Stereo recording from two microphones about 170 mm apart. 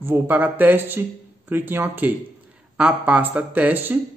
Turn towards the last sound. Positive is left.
turn(degrees=-10)  # may be behind; listen again after turning